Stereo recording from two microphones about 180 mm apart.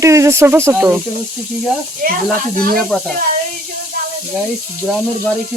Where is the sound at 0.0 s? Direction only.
15° right (ahead or behind).